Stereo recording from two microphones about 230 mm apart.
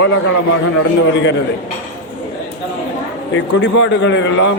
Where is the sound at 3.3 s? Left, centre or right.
Left.